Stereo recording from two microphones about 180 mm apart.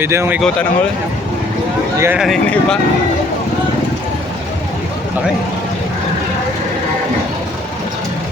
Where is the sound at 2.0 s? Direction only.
10° right (ahead or behind).